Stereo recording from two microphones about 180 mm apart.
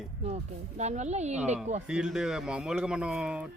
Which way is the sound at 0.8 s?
40° right (ahead or behind).